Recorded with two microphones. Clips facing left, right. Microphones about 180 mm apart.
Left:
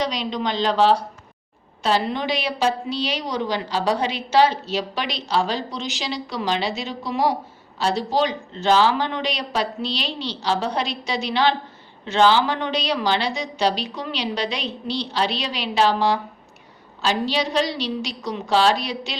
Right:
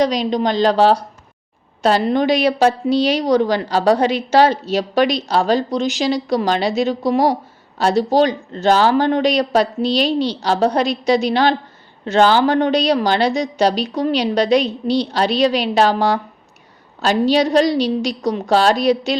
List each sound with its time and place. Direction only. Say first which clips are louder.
0.0 s a woman's voice: right 8 dB; 45° right (ahead or behind)